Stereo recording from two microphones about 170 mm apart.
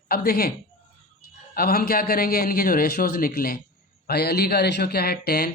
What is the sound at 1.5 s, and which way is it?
A man's voice, 60° left (ahead or behind).